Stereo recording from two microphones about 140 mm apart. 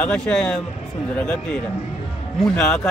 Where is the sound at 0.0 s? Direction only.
5° left (ahead or behind).